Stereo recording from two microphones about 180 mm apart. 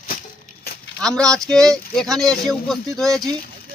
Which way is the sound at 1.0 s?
5° left (ahead or behind).